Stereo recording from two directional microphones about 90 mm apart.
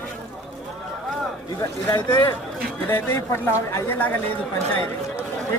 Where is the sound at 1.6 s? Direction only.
30° left (ahead or behind).